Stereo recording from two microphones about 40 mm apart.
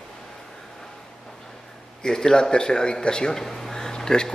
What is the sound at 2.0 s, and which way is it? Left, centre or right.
Speech, centre.